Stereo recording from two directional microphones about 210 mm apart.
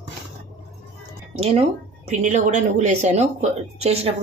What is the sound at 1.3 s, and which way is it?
A woman's voice, 30° right (ahead or behind).